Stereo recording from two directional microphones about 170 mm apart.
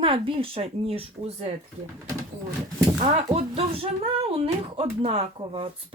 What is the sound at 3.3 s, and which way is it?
Speech, 35° right (ahead or behind).